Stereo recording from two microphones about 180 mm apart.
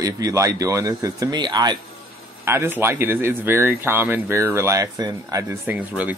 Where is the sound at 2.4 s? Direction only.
15° right (ahead or behind).